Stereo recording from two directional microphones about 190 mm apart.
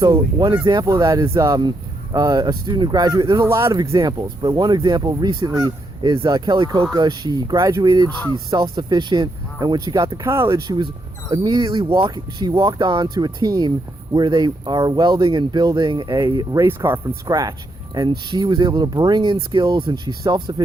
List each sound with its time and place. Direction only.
0.0 s speech: 20° right (ahead or behind)